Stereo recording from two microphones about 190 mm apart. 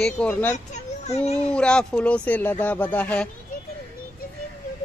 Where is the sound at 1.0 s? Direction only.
35° left (ahead or behind).